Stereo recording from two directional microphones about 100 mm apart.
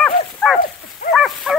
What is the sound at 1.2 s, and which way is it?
Dog, 5° right (ahead or behind).